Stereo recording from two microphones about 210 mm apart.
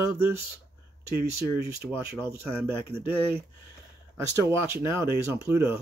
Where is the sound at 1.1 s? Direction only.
50° right (ahead or behind).